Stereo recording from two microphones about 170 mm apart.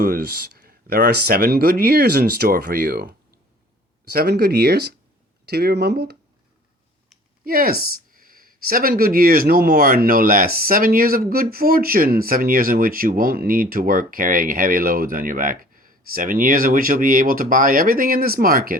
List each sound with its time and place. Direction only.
0.0 s speech: 65° right (ahead or behind)
4.1 s speech: 65° right (ahead or behind)
7.4 s speech: 60° right (ahead or behind)